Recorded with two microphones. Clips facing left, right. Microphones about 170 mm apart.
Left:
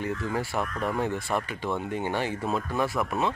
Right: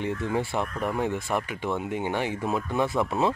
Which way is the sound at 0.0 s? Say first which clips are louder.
Right 2 dB; 20° right (ahead or behind).